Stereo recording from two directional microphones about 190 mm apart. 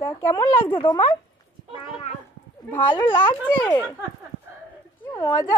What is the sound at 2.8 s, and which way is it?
Speech, 25° left (ahead or behind).